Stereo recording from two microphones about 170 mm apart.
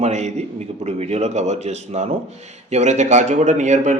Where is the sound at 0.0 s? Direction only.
40° right (ahead or behind).